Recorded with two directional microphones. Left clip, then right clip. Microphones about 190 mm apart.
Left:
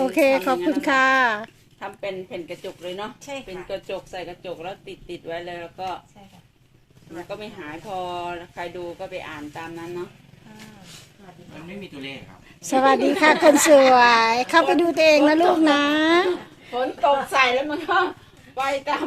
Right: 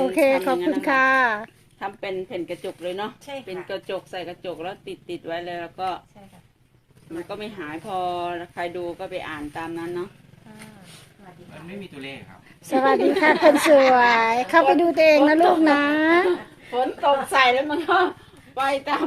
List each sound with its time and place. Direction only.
0.0 s a woman's voice: centre (ahead or behind)
1.8 s speech: 55° right (ahead or behind)
7.3 s speech: 55° right (ahead or behind)
12.7 s a woman's voice: 5° left (ahead or behind)
17.3 s speech: 55° right (ahead or behind)